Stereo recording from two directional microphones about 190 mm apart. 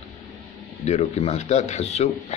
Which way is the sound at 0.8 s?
35° left (ahead or behind).